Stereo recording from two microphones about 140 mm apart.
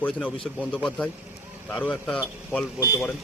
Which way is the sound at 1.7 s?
5° left (ahead or behind).